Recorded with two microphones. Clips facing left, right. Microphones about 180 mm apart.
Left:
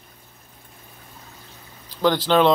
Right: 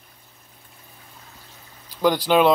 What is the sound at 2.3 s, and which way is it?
Speech, 10° right (ahead or behind).